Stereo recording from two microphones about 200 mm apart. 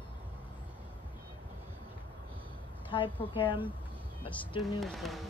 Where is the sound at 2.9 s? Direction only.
25° left (ahead or behind).